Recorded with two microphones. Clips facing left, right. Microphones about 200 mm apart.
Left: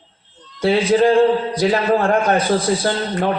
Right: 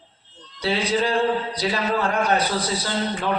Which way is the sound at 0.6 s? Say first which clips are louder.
Left 8 dB; 50° left (ahead or behind).